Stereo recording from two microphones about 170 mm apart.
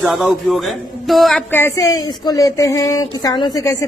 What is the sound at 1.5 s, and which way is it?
Speech, 15° left (ahead or behind).